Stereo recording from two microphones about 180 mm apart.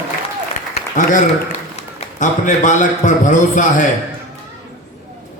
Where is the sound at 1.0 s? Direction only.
45° left (ahead or behind).